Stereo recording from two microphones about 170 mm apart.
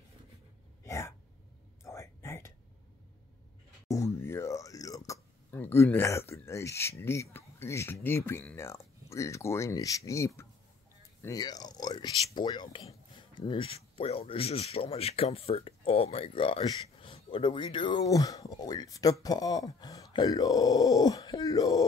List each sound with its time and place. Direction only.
0.8 s a sound: 15° left (ahead or behind)
1.8 s whispering: 15° left (ahead or behind)
3.8 s speech: 15° left (ahead or behind)